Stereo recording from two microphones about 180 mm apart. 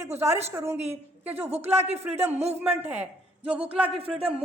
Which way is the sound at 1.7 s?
35° right (ahead or behind).